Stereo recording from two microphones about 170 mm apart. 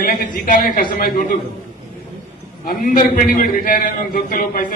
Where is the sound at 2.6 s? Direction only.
55° left (ahead or behind).